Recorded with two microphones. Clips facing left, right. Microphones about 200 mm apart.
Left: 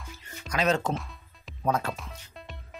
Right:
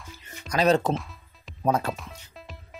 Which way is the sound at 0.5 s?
35° right (ahead or behind).